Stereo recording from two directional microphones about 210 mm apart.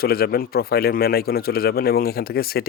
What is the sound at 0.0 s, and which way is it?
Speech, 45° left (ahead or behind).